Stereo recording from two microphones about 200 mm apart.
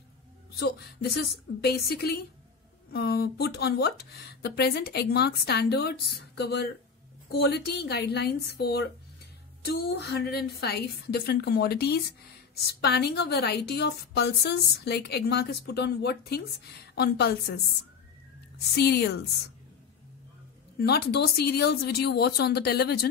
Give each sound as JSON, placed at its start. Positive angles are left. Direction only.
{"t": 0.6, "sound": "a woman's voice", "side_deg": 55}
{"t": 18.8, "sound": "a woman's voice", "side_deg": 55}
{"t": 20.8, "sound": "a woman's voice", "side_deg": 55}